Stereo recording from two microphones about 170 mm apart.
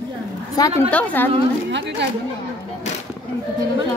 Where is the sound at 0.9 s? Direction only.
10° left (ahead or behind).